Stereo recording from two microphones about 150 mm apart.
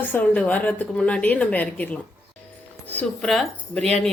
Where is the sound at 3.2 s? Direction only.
5° left (ahead or behind).